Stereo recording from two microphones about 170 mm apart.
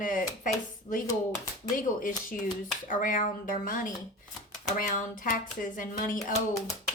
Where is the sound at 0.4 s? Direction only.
50° left (ahead or behind).